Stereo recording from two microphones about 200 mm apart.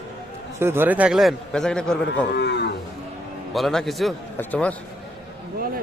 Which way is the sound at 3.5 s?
Centre (ahead or behind).